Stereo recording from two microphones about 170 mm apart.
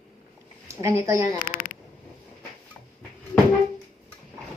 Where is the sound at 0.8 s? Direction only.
20° right (ahead or behind).